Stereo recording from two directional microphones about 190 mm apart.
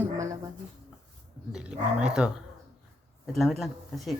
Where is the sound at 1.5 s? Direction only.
5° right (ahead or behind).